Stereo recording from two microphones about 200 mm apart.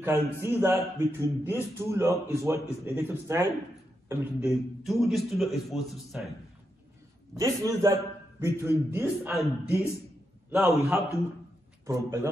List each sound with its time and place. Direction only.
0.0 s a man's voice: 10° right (ahead or behind)
7.3 s speech: 15° right (ahead or behind)